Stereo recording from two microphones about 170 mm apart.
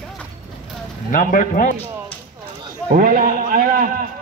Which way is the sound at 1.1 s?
55° left (ahead or behind).